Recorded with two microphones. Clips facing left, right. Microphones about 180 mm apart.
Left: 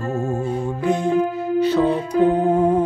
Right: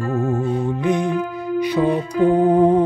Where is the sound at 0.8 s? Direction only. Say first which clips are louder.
Left 4 dB; 20° right (ahead or behind).